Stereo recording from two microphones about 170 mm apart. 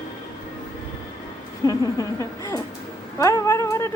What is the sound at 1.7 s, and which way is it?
Speech, 20° left (ahead or behind).